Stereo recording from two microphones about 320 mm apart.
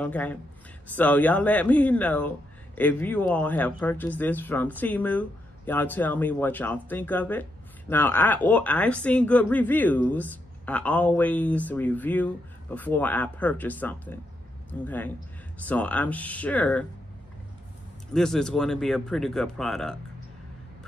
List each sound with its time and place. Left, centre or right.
0.0 s speech: centre
18.1 s speech: centre